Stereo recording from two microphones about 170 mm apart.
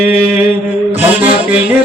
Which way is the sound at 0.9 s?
10° right (ahead or behind).